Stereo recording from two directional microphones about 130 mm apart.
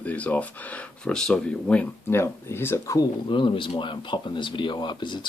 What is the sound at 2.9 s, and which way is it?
Speech, 40° left (ahead or behind).